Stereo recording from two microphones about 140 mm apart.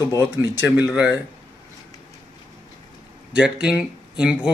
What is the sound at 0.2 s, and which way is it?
Speech, 20° right (ahead or behind).